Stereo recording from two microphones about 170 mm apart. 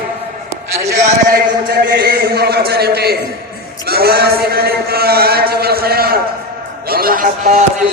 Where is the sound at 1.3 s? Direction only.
70° right (ahead or behind).